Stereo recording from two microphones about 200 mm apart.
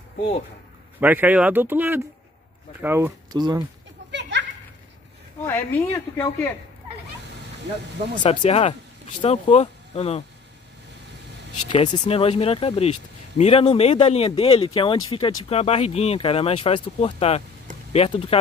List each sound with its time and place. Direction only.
0.9 s speech: 10° right (ahead or behind)
4.1 s a sound: 65° right (ahead or behind)
5.4 s speech: 10° left (ahead or behind)
8.2 s speech: 30° left (ahead or behind)
11.7 s speech: 25° left (ahead or behind)